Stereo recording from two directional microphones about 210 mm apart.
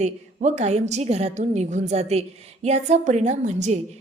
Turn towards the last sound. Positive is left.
turn(degrees=-35)  # may be behind; listen again after turning